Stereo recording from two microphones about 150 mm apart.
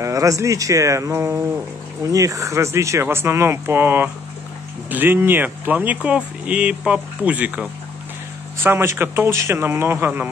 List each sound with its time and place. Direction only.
0.0 s speech: 20° right (ahead or behind)
8.6 s speech: 15° right (ahead or behind)